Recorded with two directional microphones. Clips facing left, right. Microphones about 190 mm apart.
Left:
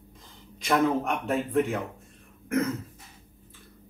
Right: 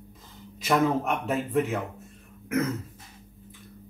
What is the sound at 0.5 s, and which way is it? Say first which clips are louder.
Speech: even; centre (ahead or behind).